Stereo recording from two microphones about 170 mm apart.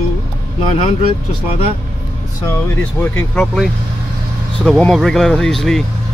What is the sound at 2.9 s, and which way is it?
Speech, 10° left (ahead or behind).